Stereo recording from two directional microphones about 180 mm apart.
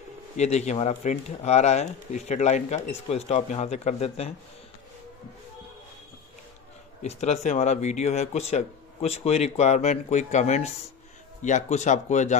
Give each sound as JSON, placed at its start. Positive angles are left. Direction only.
{"t": 0.4, "sound": "speech", "side_deg": 40}
{"t": 7.0, "sound": "speech", "side_deg": 40}